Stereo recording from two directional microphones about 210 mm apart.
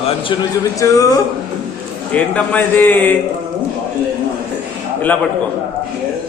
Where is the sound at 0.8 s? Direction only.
15° left (ahead or behind).